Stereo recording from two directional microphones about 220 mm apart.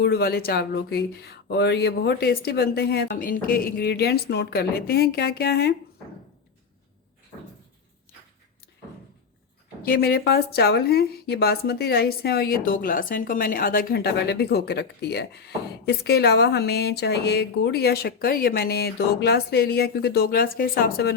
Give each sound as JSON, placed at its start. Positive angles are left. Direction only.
{"t": 0.0, "sound": "speech", "side_deg": 45}
{"t": 9.8, "sound": "speech", "side_deg": 45}